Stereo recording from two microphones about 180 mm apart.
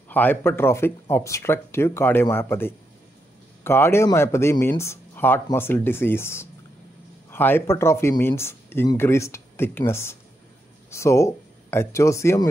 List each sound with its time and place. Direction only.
0.1 s speech: 10° left (ahead or behind)